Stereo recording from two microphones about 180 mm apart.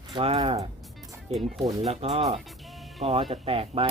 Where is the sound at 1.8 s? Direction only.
35° right (ahead or behind).